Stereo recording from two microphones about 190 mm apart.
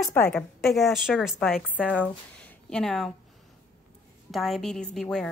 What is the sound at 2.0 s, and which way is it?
Speech, 5° left (ahead or behind).